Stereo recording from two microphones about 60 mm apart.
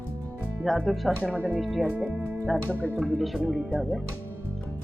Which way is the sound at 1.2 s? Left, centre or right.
Left.